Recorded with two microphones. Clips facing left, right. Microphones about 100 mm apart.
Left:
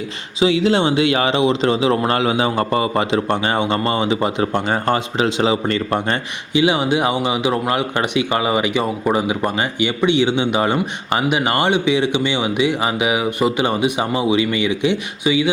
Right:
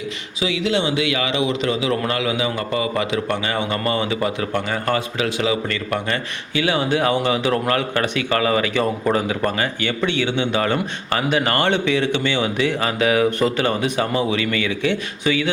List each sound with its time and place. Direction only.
0.3 s speech: 35° left (ahead or behind)
6.5 s speech: 20° left (ahead or behind)